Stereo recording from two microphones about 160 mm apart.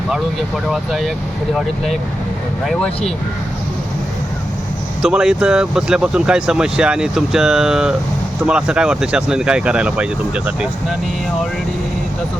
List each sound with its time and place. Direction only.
0.7 s speech: centre (ahead or behind)
2.6 s speech: 5° left (ahead or behind)
5.0 s speech: 5° right (ahead or behind)